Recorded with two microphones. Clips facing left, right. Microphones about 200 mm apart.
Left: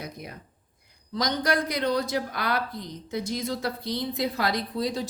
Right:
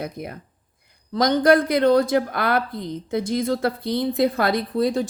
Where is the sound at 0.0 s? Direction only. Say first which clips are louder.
Right 8 dB; 55° right (ahead or behind).